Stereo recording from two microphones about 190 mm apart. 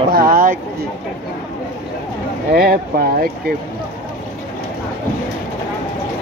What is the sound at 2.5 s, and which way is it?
Speech, 50° right (ahead or behind).